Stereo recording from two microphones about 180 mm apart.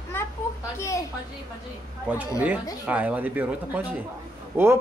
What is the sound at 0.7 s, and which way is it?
Speech, 15° left (ahead or behind).